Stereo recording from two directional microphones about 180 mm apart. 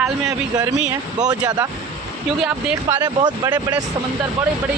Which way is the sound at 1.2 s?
20° right (ahead or behind).